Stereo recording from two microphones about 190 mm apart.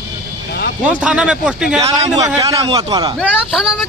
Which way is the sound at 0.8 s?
5° right (ahead or behind).